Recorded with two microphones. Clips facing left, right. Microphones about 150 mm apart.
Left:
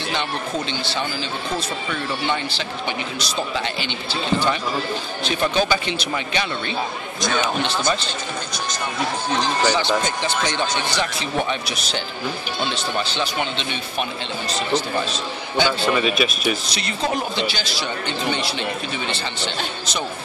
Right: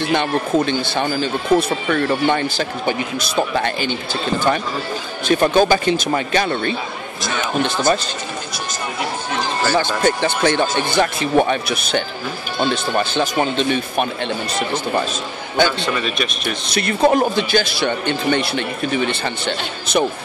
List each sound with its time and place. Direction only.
0.1 s speech: 50° right (ahead or behind)
9.4 s run: 20° left (ahead or behind)
9.8 s speech: 55° right (ahead or behind)
15.8 s speech: 5° left (ahead or behind)
16.6 s speech: 55° right (ahead or behind)